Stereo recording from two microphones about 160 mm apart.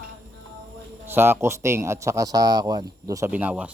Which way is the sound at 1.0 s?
15° right (ahead or behind).